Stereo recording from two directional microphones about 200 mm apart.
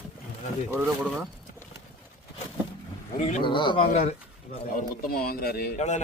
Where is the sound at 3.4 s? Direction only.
25° left (ahead or behind).